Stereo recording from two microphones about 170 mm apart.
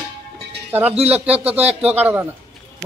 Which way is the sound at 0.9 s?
35° right (ahead or behind).